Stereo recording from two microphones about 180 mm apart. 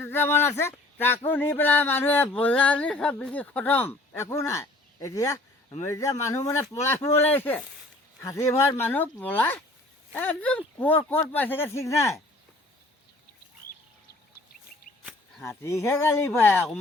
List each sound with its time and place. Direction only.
0.0 s speech: 10° left (ahead or behind)
15.4 s speech: 15° left (ahead or behind)